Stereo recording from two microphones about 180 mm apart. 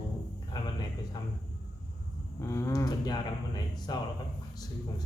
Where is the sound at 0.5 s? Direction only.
25° left (ahead or behind).